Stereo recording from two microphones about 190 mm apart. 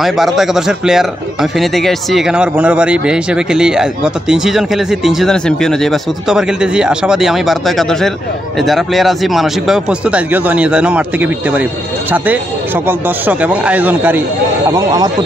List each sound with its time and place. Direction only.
0.0 s a man's voice: centre (ahead or behind); by 15.0 s 20° right (ahead or behind)